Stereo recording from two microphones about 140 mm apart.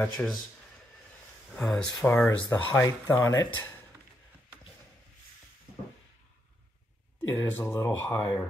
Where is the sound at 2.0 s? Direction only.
15° left (ahead or behind).